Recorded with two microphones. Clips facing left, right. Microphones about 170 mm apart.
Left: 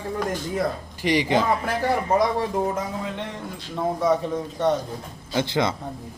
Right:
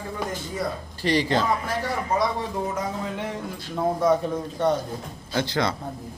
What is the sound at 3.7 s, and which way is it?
A man's voice, centre (ahead or behind).